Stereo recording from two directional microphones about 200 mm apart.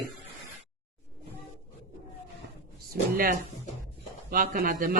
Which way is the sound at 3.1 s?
45° right (ahead or behind).